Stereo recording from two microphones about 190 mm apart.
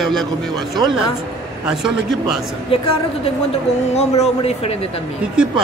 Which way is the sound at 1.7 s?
5° right (ahead or behind).